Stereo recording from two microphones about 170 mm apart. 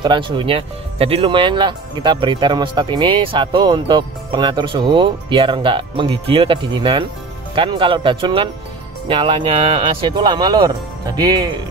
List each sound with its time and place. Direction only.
0.0 s speech: 30° right (ahead or behind)